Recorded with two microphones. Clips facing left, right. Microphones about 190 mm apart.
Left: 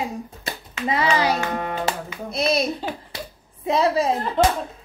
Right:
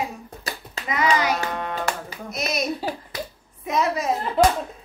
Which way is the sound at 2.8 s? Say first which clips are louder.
Right 1 dB; 10° right (ahead or behind).